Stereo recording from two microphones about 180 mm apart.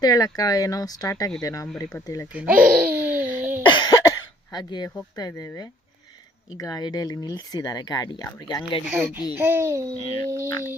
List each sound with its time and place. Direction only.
0.0 s speech: 20° left (ahead or behind)
2.3 s laughter: 5° right (ahead or behind)
3.7 s throat clearing: 25° left (ahead or behind)
6.6 s speech: 20° left (ahead or behind)
8.9 s a child's voice: 10° right (ahead or behind)